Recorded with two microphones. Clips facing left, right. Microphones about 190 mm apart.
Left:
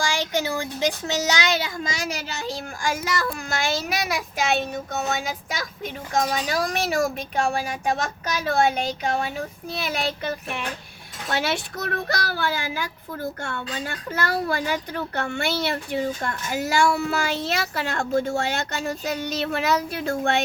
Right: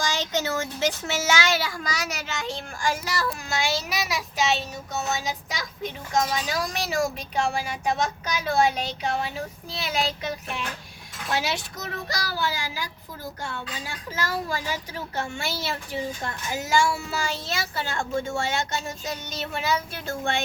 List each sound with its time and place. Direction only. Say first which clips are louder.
0.0 s a child's voice: left 2 dB; 10° left (ahead or behind); by 18.1 s 65° left (ahead or behind)
18.1 s a child's voice: left 6 dB; 40° left (ahead or behind)
18.3 s speech: left 2 dB; 65° left (ahead or behind)